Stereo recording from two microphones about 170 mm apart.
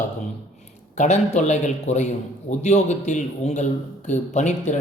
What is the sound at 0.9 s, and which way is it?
A man's voice, 45° left (ahead or behind).